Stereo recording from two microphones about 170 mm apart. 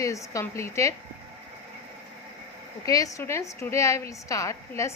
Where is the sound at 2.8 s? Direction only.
20° left (ahead or behind).